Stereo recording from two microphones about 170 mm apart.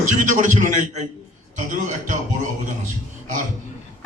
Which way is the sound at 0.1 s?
45° right (ahead or behind).